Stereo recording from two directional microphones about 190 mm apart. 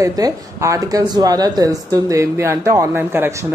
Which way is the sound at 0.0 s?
20° right (ahead or behind).